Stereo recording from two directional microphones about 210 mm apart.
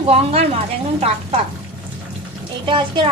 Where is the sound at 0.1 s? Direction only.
30° right (ahead or behind).